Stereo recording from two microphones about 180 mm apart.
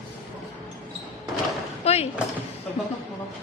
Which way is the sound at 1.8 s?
35° left (ahead or behind).